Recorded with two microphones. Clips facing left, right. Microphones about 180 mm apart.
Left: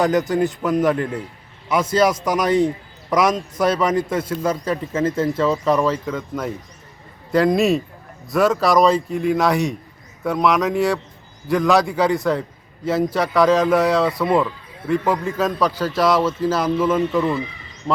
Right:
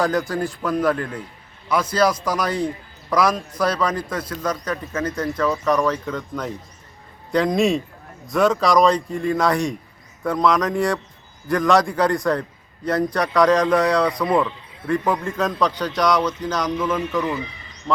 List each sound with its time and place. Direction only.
0.0 s a man's voice: 20° left (ahead or behind)
5.9 s a man's voice: 5° left (ahead or behind)
17.1 s a man's voice: 25° left (ahead or behind)